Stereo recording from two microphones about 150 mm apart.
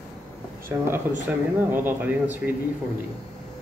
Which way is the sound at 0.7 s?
15° right (ahead or behind).